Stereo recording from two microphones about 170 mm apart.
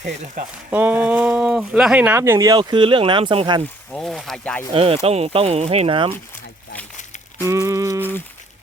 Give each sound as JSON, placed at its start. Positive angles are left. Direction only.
{"t": 0.0, "sound": "speech", "side_deg": -45}
{"t": 0.7, "sound": "speech", "side_deg": -10}
{"t": 3.9, "sound": "speech", "side_deg": 5}
{"t": 4.7, "sound": "speech", "side_deg": -35}
{"t": 7.4, "sound": "a sound", "side_deg": -15}